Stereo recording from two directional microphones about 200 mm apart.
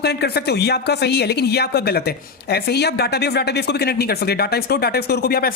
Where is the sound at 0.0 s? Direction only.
55° left (ahead or behind).